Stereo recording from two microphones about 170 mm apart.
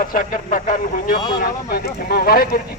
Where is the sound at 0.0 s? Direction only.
50° left (ahead or behind).